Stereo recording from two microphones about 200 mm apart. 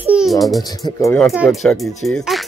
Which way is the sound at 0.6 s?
15° left (ahead or behind).